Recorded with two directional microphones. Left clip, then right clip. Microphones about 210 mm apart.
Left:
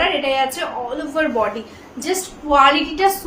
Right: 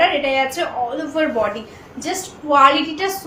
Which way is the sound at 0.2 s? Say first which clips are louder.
Even; 20° left (ahead or behind).